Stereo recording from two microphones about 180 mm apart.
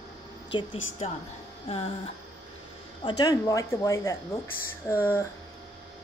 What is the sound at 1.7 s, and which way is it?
Music, 30° left (ahead or behind).